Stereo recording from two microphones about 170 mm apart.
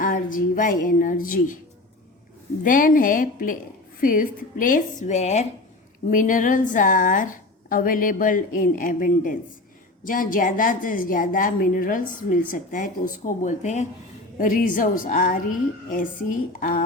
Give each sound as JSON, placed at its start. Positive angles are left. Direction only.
{"t": 0.0, "sound": "speech", "side_deg": 50}
{"t": 2.6, "sound": "a woman's voice", "side_deg": 50}